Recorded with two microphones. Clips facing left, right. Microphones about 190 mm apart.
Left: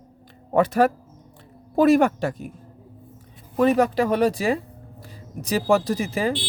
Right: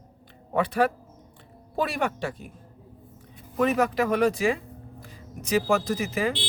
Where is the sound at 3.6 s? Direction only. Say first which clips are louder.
Left 4 dB; 30° left (ahead or behind).